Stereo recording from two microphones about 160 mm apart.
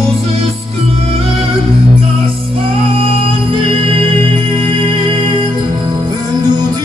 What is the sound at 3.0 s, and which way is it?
Music, 35° right (ahead or behind).